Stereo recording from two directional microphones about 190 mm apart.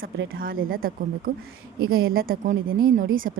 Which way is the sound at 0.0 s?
50° right (ahead or behind).